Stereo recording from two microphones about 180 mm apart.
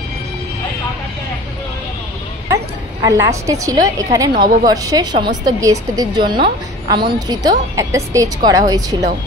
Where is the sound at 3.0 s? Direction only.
15° right (ahead or behind).